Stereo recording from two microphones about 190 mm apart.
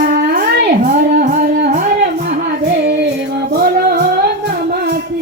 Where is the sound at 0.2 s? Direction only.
55° right (ahead or behind).